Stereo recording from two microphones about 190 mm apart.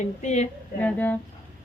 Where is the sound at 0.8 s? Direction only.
5° left (ahead or behind).